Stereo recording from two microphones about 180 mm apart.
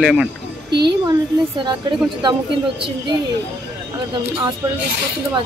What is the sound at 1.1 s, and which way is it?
Speech, 25° right (ahead or behind).